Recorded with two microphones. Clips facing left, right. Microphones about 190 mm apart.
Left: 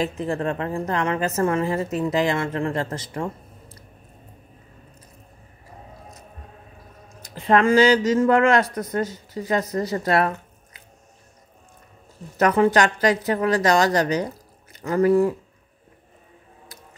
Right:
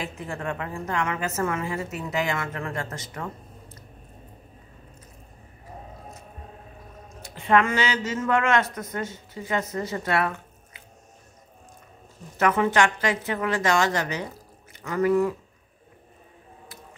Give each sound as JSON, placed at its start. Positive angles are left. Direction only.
{"t": 0.0, "sound": "a woman's voice", "side_deg": 35}
{"t": 7.2, "sound": "a woman's voice", "side_deg": 35}
{"t": 12.4, "sound": "a woman's voice", "side_deg": 35}